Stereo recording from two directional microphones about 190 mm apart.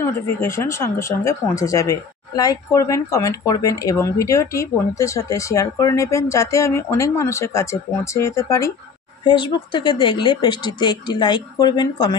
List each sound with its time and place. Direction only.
0.0 s speech: 15° left (ahead or behind)